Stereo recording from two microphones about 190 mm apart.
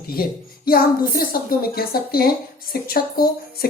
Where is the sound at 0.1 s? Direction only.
50° left (ahead or behind).